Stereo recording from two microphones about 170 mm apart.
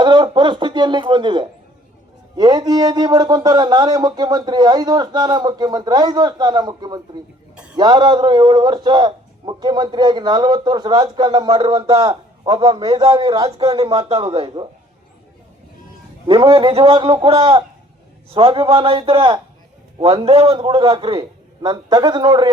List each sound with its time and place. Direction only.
0.0 s a man's voice: 25° right (ahead or behind)
7.5 s a sound: 5° right (ahead or behind)
7.8 s a man's voice: 25° right (ahead or behind)
16.2 s a man's voice: 35° right (ahead or behind)